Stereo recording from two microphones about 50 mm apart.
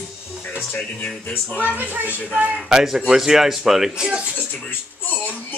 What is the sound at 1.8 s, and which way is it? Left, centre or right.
Speech, right.